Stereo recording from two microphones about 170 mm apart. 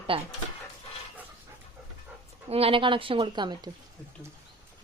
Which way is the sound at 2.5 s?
35° right (ahead or behind).